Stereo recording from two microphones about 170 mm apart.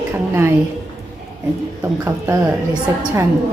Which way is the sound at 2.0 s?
15° right (ahead or behind).